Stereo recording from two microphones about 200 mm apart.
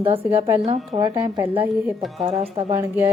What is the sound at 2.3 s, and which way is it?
Speech, 30° right (ahead or behind).